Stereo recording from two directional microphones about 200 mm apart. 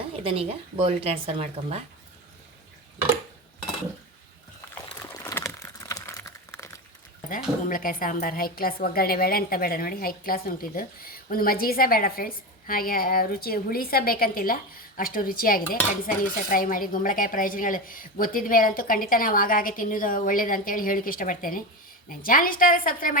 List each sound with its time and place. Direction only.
0.1 s speech: 30° right (ahead or behind)
4.9 s crumpling: 15° left (ahead or behind)
7.3 s a woman's voice: 45° left (ahead or behind)